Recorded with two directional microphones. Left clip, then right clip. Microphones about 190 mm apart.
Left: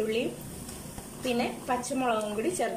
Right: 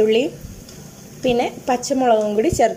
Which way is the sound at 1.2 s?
40° right (ahead or behind).